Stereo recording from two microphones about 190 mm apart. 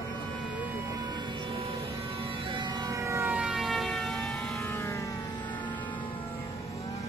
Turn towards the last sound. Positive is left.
turn(degrees=15)  # may be behind; listen again after turning